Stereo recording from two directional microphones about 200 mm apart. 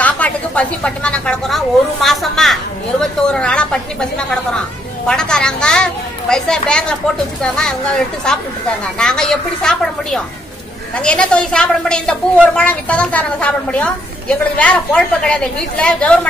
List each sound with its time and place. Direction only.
0.0 s a woman's voice: 5° left (ahead or behind)